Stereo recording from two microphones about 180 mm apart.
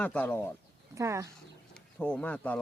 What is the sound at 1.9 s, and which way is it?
Speech, 10° left (ahead or behind).